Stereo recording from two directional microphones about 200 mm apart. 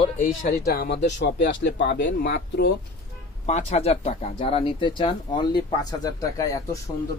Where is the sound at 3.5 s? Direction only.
35° left (ahead or behind); by 6.8 s 15° left (ahead or behind).